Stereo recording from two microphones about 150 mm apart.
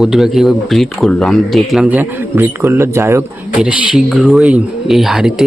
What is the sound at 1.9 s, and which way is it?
Speech, 15° right (ahead or behind).